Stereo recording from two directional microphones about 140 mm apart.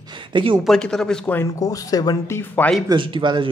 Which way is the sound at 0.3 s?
35° right (ahead or behind).